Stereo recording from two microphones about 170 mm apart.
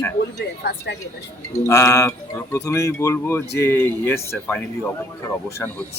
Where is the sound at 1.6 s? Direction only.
15° left (ahead or behind).